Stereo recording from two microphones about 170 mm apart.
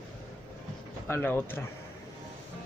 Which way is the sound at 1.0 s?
10° left (ahead or behind).